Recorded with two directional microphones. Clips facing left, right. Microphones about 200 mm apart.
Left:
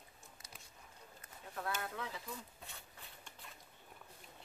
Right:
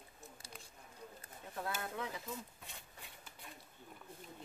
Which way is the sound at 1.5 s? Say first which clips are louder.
Even; 20° right (ahead or behind).